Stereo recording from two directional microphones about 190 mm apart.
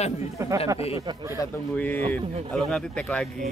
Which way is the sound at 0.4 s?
15° right (ahead or behind).